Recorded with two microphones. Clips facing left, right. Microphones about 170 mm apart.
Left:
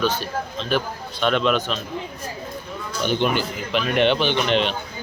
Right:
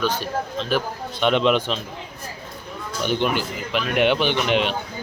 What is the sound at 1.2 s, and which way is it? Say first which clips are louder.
Speech: right 2 dB; 20° right (ahead or behind).